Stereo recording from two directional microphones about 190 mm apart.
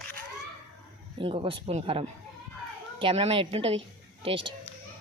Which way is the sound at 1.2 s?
30° right (ahead or behind).